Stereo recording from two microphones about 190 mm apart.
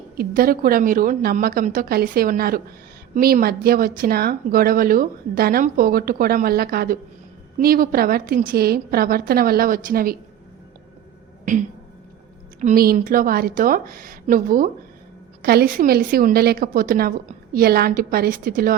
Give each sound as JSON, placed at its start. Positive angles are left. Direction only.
{"t": 0.2, "sound": "speech", "side_deg": -50}
{"t": 12.5, "sound": "speech", "side_deg": -45}